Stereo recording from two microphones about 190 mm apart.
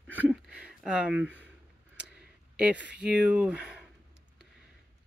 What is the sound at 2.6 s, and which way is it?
Speech, 5° right (ahead or behind).